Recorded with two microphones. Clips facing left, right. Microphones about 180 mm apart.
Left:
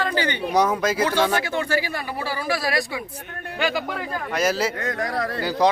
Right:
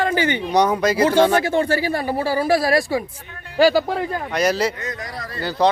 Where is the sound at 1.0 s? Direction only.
25° right (ahead or behind).